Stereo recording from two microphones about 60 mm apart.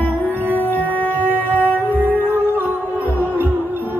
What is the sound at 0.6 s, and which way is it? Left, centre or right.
Music, left.